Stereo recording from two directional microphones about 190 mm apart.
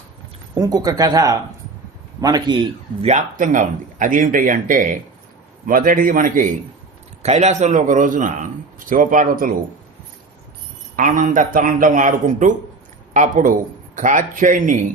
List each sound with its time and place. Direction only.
0.5 s speech: 20° right (ahead or behind)
3.0 s a man's voice: 35° right (ahead or behind)
10.9 s speech: 45° right (ahead or behind)